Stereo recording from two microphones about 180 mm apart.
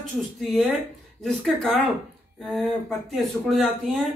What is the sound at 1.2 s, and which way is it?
Speech, centre (ahead or behind).